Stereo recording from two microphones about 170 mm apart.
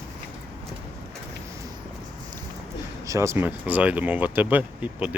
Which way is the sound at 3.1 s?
15° right (ahead or behind).